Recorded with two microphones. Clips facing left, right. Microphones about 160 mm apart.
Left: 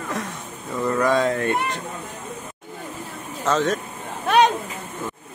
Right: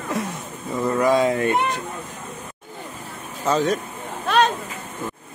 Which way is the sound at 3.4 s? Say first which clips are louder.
Right 1 dB; centre (ahead or behind).